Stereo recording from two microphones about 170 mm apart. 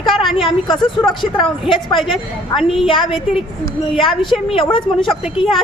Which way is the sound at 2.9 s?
30° left (ahead or behind).